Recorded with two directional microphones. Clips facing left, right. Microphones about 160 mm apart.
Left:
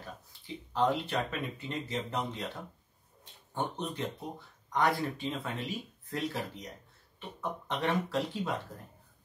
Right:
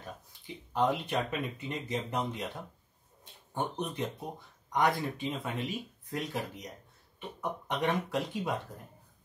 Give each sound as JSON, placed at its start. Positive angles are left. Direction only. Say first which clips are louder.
{"t": 0.7, "sound": "speech", "louder": "even", "side_deg": -20}
{"t": 3.5, "sound": "speech", "louder": "right 1 dB", "side_deg": -15}